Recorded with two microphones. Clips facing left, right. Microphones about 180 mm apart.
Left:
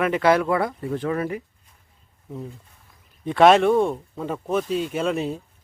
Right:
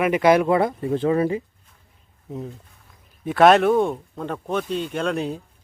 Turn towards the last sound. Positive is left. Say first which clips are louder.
# even
turn(degrees=0)  # may be behind; listen again after turning